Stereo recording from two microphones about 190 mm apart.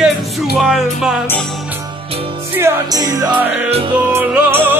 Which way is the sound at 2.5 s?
15° right (ahead or behind).